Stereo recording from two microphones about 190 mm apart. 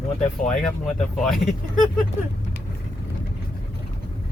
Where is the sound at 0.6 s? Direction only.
5° left (ahead or behind).